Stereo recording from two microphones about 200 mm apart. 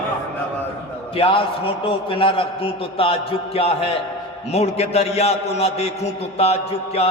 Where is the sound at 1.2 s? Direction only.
25° left (ahead or behind).